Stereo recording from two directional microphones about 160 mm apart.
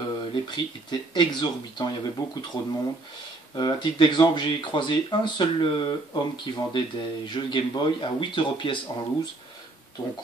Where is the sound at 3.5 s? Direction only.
30° left (ahead or behind).